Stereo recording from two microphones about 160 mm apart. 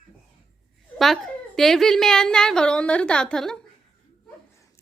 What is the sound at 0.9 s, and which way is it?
Speech, centre (ahead or behind).